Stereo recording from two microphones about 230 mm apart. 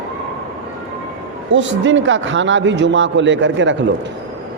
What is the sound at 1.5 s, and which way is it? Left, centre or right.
A man's voice, right.